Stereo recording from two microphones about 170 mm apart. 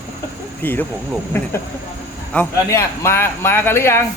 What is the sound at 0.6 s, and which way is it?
Speech, 10° left (ahead or behind).